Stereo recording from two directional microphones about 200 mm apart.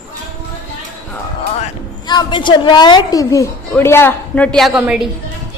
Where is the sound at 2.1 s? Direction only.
20° left (ahead or behind); by 5.0 s 5° right (ahead or behind).